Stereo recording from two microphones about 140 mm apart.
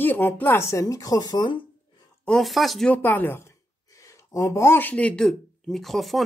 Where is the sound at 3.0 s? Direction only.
15° left (ahead or behind).